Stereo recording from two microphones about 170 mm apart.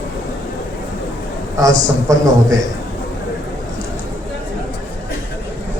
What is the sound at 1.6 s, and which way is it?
Speech, 20° right (ahead or behind).